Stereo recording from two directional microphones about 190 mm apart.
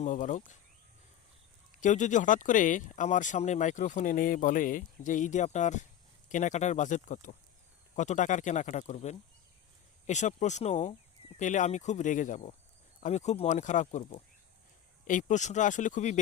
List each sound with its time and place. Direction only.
0.0 s speech: 40° left (ahead or behind)
1.8 s speech: 40° left (ahead or behind)